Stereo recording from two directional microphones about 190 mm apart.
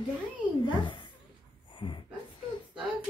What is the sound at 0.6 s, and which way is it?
Speech, 25° left (ahead or behind).